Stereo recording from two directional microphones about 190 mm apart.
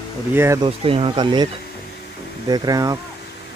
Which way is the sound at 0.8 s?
30° right (ahead or behind).